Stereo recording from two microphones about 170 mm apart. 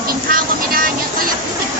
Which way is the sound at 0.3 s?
60° right (ahead or behind).